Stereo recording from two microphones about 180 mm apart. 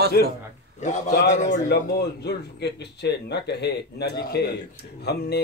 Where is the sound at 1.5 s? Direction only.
70° left (ahead or behind).